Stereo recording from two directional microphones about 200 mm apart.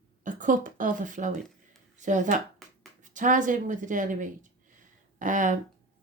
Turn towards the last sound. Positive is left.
turn(degrees=-40)  # may be behind; listen again after turning